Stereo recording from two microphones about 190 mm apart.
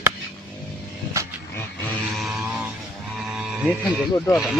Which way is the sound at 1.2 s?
15° right (ahead or behind).